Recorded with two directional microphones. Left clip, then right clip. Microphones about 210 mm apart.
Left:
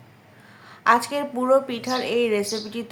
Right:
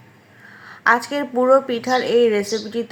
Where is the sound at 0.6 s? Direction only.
15° right (ahead or behind).